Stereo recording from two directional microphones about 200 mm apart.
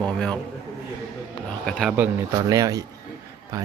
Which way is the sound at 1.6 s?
Centre (ahead or behind).